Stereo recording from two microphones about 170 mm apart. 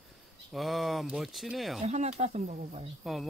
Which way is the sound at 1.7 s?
40° right (ahead or behind).